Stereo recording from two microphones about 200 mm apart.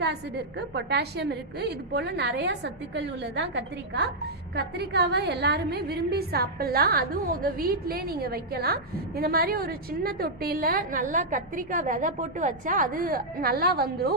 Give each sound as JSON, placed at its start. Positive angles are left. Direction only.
{"t": 0.7, "sound": "a woman's voice", "side_deg": -55}